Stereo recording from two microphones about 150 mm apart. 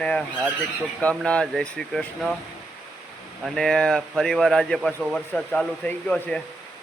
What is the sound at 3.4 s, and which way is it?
Speech, 5° left (ahead or behind).